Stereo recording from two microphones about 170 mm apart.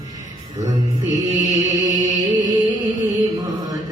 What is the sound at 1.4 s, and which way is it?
Music, 20° right (ahead or behind).